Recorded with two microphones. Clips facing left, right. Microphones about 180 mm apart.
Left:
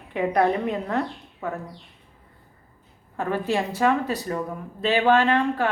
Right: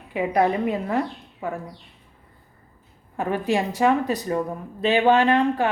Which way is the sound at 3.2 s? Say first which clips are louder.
Right 2 dB; 15° right (ahead or behind).